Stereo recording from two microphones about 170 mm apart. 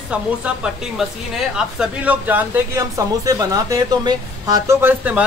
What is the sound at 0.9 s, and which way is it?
Speech, 5° right (ahead or behind).